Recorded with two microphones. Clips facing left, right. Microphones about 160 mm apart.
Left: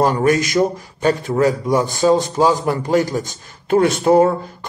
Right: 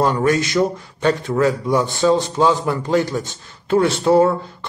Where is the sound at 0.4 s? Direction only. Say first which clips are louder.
Left 1 dB; 40° left (ahead or behind).